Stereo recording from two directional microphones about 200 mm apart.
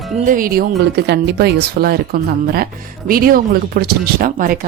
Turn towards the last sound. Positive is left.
turn(degrees=-45)  # may be behind; listen again after turning